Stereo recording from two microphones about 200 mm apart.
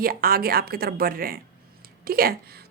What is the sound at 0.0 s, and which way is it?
A woman's voice, 45° right (ahead or behind).